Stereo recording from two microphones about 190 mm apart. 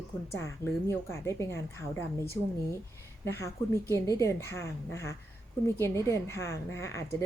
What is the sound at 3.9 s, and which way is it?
A woman's voice, 15° left (ahead or behind).